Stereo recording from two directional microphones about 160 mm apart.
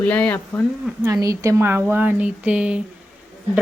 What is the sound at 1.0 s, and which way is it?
Speech, 20° right (ahead or behind).